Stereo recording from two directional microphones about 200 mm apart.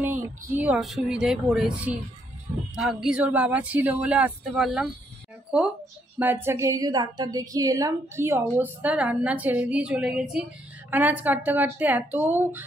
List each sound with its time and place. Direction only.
0.0 s speech: 10° right (ahead or behind)
6.1 s speech: 10° right (ahead or behind)